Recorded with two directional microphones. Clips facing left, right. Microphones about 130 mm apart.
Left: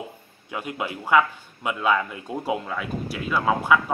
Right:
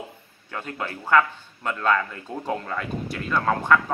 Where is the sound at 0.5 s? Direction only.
10° left (ahead or behind).